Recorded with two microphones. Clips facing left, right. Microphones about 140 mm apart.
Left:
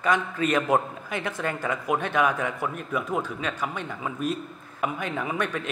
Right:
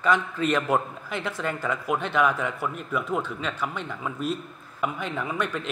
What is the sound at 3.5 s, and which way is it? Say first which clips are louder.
Speech: even; 15° left (ahead or behind).